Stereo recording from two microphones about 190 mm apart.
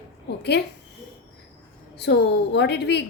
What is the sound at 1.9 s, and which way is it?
A woman's voice, 60° left (ahead or behind).